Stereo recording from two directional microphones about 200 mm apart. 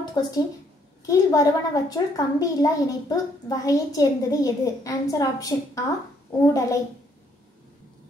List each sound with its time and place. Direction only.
0.2 s a woman's voice: 20° left (ahead or behind)